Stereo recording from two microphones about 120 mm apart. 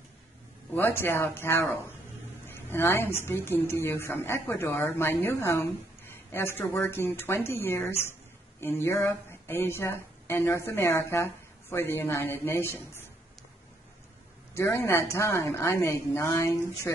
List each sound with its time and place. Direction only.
0.7 s a woman's voice: 20° left (ahead or behind)
8.0 s a sound: 20° left (ahead or behind)
9.0 s a woman's voice: 20° left (ahead or behind)
14.5 s a woman's voice: 20° left (ahead or behind)